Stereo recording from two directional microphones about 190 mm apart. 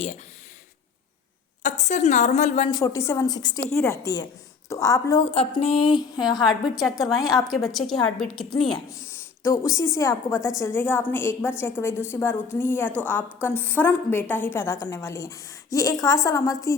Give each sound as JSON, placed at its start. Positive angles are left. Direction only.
{"t": 1.6, "sound": "a woman's voice", "side_deg": 35}
{"t": 2.6, "sound": "a woman's voice", "side_deg": 20}
{"t": 5.2, "sound": "speech", "side_deg": 30}
{"t": 6.7, "sound": "a woman's voice", "side_deg": 0}
{"t": 8.9, "sound": "a woman's voice", "side_deg": 15}